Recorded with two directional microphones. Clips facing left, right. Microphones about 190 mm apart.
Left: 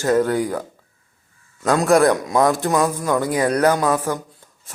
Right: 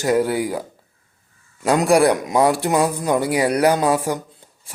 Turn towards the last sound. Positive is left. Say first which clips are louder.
# right 1 dB
turn(degrees=-10)  # may be behind; listen again after turning